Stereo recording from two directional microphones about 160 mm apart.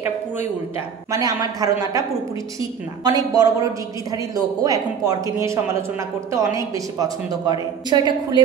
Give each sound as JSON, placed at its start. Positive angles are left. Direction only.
{"t": 1.1, "sound": "a woman's voice", "side_deg": -25}